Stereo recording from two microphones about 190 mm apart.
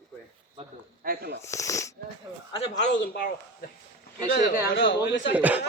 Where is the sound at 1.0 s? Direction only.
50° right (ahead or behind).